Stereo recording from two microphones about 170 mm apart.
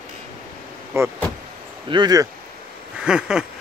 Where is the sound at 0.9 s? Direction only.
15° right (ahead or behind).